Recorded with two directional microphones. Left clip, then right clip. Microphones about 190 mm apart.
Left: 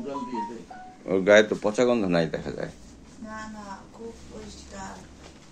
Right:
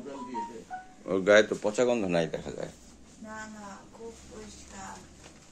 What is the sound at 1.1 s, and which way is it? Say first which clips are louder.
Speech: left 4 dB; 20° right (ahead or behind).